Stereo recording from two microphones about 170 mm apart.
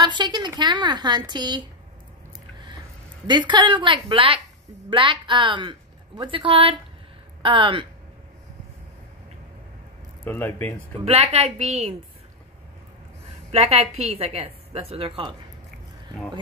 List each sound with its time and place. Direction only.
0.0 s a woman's voice: 25° right (ahead or behind)
3.3 s a woman's voice: 25° right (ahead or behind)
10.2 s speech: 10° left (ahead or behind)
11.1 s a woman's voice: 40° right (ahead or behind)
13.5 s a woman's voice: 40° right (ahead or behind)